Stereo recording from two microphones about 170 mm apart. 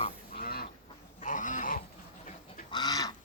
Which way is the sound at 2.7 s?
25° left (ahead or behind).